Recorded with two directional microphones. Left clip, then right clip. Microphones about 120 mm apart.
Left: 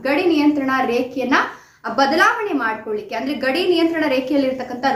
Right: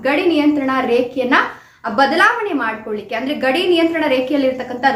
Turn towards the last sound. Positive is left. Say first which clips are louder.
# right 4 dB
turn(degrees=-10)  # may be behind; listen again after turning